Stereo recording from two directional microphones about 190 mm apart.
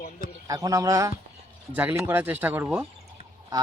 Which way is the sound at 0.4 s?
20° right (ahead or behind).